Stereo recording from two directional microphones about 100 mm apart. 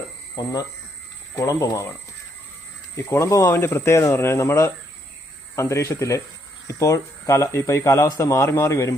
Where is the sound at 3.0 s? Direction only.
30° left (ahead or behind).